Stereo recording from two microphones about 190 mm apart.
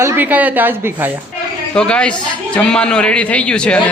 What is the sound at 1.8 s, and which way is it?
A man's voice, 5° left (ahead or behind).